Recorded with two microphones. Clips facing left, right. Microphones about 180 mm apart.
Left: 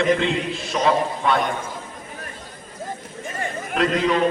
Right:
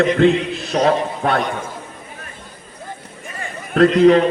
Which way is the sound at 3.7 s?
50° right (ahead or behind).